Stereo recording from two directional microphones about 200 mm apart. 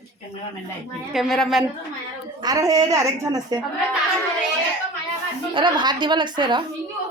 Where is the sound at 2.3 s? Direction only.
20° right (ahead or behind).